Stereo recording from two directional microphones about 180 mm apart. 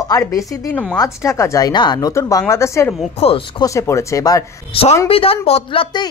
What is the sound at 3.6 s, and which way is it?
Speech, 15° left (ahead or behind).